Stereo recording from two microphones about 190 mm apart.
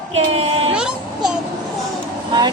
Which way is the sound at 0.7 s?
5° right (ahead or behind).